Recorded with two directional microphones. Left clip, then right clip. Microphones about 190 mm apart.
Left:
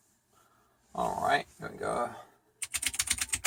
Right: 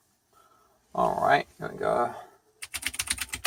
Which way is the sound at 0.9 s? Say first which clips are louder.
Right 6 dB; 45° right (ahead or behind).